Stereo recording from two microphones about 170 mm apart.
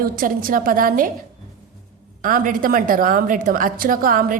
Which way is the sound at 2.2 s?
55° right (ahead or behind).